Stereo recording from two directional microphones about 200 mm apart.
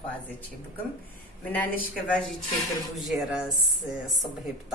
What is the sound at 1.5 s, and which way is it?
A woman's voice, 10° left (ahead or behind).